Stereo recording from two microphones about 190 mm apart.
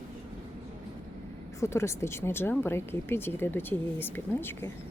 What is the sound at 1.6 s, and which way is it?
Speech, 15° left (ahead or behind).